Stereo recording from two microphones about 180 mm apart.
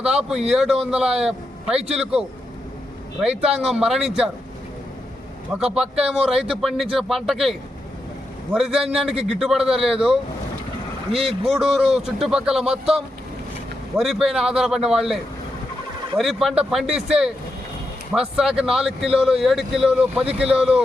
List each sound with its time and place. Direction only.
0.0 s a man's voice: 5° right (ahead or behind)
5.5 s a man's voice: 5° right (ahead or behind)
8.5 s a man's voice: 5° right (ahead or behind)
11.1 s speech: 30° right (ahead or behind)
11.4 s a man's voice: centre (ahead or behind)